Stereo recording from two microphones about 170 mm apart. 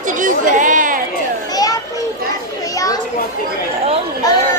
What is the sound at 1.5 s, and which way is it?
Children playing, 20° left (ahead or behind).